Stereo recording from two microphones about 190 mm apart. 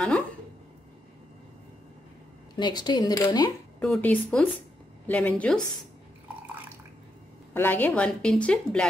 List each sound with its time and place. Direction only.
2.5 s speech: 20° left (ahead or behind)
3.8 s a woman's voice: 5° left (ahead or behind)
7.5 s a woman's voice: 10° left (ahead or behind)